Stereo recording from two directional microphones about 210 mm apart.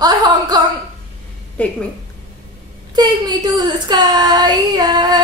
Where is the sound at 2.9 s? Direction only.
20° right (ahead or behind).